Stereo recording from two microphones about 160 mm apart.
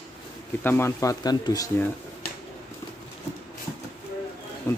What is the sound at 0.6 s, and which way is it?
Speech, 15° left (ahead or behind).